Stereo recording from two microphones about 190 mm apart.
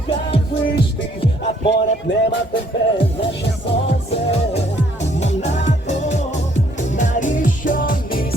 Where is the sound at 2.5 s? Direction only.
30° left (ahead or behind).